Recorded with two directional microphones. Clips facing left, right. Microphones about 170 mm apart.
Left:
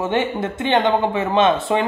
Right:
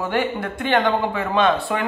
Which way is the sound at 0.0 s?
20° left (ahead or behind).